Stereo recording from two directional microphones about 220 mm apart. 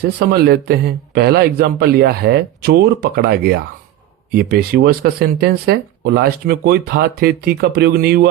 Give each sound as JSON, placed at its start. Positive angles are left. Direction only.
{"t": 0.0, "sound": "speech", "side_deg": -45}